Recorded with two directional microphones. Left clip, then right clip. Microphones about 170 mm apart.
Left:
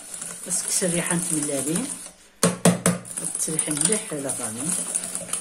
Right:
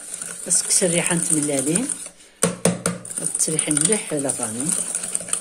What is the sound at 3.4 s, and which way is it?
Speech, 30° right (ahead or behind).